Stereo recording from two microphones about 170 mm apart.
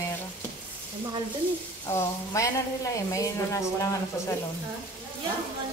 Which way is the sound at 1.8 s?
20° left (ahead or behind).